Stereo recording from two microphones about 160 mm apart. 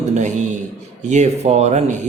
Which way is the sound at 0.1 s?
50° right (ahead or behind).